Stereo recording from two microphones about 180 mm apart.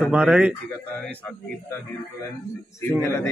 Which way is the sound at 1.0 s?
5° left (ahead or behind).